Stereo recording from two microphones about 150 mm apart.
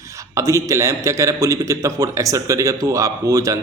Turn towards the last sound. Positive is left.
turn(degrees=-20)  # may be behind; listen again after turning